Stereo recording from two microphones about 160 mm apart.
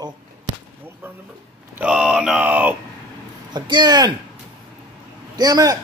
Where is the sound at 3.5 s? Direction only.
25° right (ahead or behind).